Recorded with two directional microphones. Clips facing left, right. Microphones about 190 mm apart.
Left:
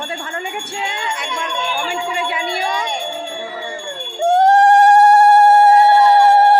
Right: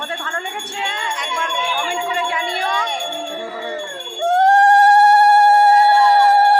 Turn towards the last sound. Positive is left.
turn(degrees=25)  # may be behind; listen again after turning